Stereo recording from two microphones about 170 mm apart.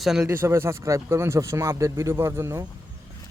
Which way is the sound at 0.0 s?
5° right (ahead or behind).